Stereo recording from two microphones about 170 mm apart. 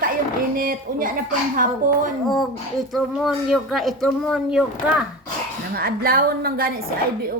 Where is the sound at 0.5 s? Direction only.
55° right (ahead or behind).